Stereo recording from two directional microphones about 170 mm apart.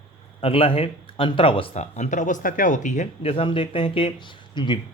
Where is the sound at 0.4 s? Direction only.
35° left (ahead or behind).